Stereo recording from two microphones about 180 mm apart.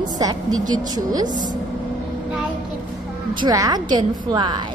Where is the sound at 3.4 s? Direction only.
20° right (ahead or behind).